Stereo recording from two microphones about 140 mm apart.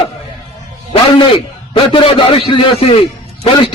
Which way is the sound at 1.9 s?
40° left (ahead or behind).